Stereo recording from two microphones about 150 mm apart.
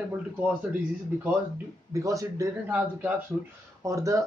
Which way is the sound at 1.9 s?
20° right (ahead or behind).